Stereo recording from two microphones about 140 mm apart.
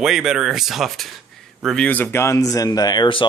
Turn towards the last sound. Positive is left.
turn(degrees=35)  # may be behind; listen again after turning